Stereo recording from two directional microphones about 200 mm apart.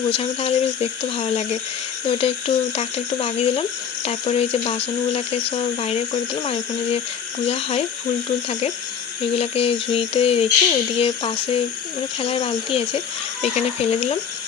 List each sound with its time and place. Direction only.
0.1 s speech: 30° left (ahead or behind)
9.3 s speech: 30° left (ahead or behind)